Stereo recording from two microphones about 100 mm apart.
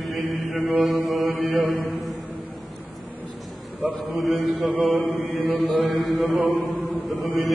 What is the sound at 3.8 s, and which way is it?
Mantra, centre (ahead or behind).